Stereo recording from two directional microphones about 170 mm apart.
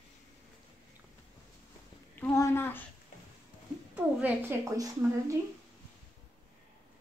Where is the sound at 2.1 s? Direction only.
15° left (ahead or behind).